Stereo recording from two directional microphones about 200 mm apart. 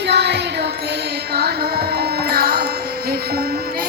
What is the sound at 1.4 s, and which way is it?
Carnatic music, 50° right (ahead or behind).